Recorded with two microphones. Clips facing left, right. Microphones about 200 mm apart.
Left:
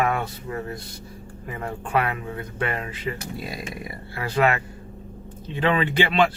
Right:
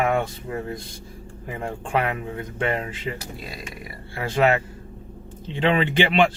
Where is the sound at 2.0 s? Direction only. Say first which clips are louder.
Right 2 dB; 20° right (ahead or behind).